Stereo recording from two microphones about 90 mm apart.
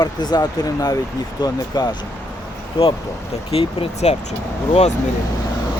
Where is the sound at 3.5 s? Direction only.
90° left.